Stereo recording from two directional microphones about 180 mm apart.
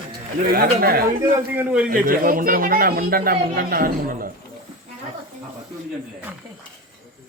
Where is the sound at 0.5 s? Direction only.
55° right (ahead or behind).